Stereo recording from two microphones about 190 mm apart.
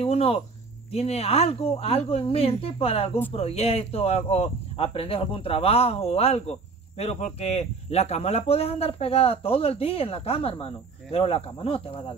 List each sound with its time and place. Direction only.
0.0 s speech: 30° left (ahead or behind)